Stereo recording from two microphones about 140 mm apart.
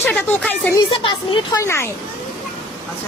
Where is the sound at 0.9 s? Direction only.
40° left (ahead or behind).